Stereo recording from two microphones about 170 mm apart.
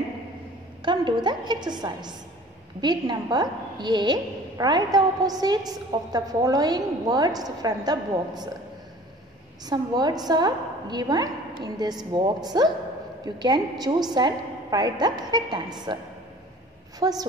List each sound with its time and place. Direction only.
0.8 s a woman's voice: 25° right (ahead or behind)
9.7 s a woman's voice: 25° right (ahead or behind)
17.0 s a woman's voice: 25° right (ahead or behind)